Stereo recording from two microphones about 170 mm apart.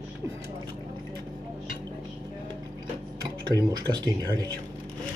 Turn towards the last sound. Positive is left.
turn(degrees=-25)  # may be behind; listen again after turning